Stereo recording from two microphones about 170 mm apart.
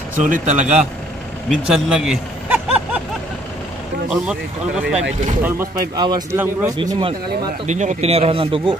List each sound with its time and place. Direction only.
0.2 s speech: 45° right (ahead or behind)
1.5 s vehicle: 5° right (ahead or behind)
4.1 s speech: 5° right (ahead or behind)
5.9 s speech: 25° right (ahead or behind)
6.3 s speech: 10° right (ahead or behind)
6.8 s speech: 30° right (ahead or behind)
7.6 s speech: 45° right (ahead or behind)